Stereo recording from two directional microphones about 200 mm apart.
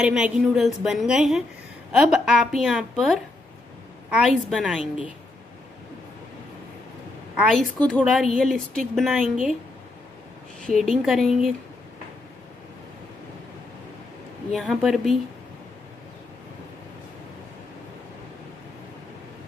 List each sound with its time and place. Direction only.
0.0 s a woman's voice: 5° right (ahead or behind)
7.3 s a woman's voice: centre (ahead or behind)
10.7 s a woman's voice: centre (ahead or behind)
14.5 s a woman's voice: centre (ahead or behind)